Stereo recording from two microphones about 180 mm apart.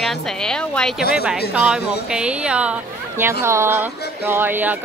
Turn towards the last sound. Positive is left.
turn(degrees=-10)  # may be behind; listen again after turning